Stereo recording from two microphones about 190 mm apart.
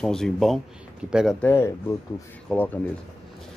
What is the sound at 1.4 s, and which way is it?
Speech, 10° left (ahead or behind).